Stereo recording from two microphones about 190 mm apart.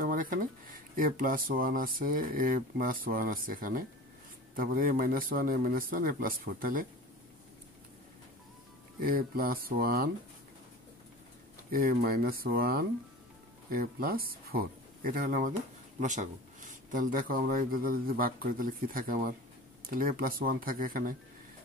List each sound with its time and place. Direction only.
0.0 s a sound: 45° right (ahead or behind)
0.9 s speech: 45° right (ahead or behind)
9.0 s speech: 50° right (ahead or behind)
11.7 s speech: 50° right (ahead or behind)